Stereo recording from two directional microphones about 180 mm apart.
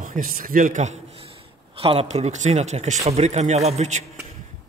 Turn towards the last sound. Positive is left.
turn(degrees=-40)  # may be behind; listen again after turning